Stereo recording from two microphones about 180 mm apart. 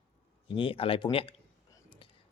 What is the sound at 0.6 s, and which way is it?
Speech, 30° left (ahead or behind).